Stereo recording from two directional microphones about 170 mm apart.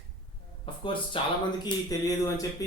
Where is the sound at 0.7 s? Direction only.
30° left (ahead or behind).